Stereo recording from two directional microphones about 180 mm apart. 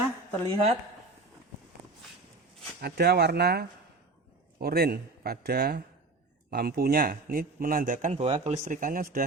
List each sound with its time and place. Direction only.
0.5 s speech: 35° right (ahead or behind)
2.8 s a man's voice: 60° right (ahead or behind)